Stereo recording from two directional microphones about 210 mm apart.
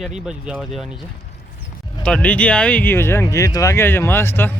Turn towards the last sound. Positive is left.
turn(degrees=10)  # may be behind; listen again after turning